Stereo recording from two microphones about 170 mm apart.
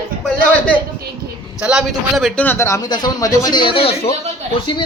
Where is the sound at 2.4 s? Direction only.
15° left (ahead or behind).